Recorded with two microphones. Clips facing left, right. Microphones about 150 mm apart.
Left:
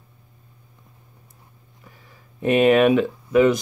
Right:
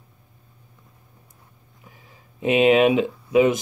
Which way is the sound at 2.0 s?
20° right (ahead or behind).